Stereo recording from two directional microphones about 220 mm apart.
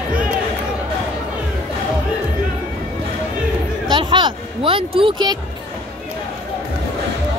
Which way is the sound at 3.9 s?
20° right (ahead or behind).